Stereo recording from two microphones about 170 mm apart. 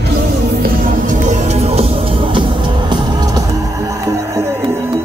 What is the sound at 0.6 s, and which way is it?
Music, 50° right (ahead or behind).